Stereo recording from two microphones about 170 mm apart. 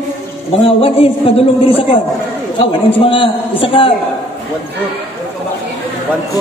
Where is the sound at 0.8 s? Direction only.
35° left (ahead or behind).